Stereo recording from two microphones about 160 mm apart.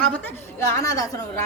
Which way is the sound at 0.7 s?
20° left (ahead or behind).